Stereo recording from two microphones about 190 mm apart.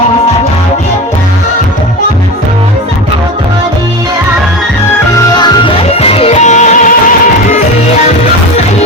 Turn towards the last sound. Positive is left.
turn(degrees=40)  # may be behind; listen again after turning